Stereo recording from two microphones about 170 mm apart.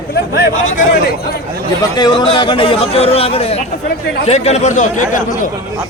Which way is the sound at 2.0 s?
30° left (ahead or behind).